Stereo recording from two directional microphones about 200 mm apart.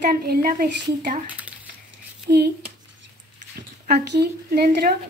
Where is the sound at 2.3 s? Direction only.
50° right (ahead or behind).